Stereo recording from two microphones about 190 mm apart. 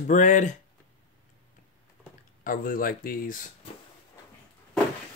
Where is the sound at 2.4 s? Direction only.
45° left (ahead or behind).